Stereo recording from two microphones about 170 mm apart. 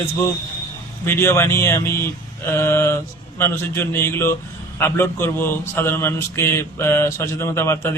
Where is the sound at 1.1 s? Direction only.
15° left (ahead or behind).